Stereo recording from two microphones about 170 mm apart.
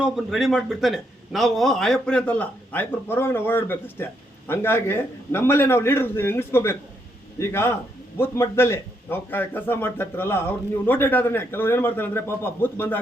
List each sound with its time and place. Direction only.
0.0 s a man's voice: centre (ahead or behind)